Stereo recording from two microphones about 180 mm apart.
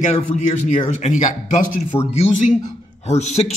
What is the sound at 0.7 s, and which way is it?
Speech, 40° left (ahead or behind).